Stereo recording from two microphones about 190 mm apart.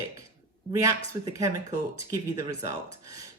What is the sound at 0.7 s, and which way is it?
Speech, 15° right (ahead or behind).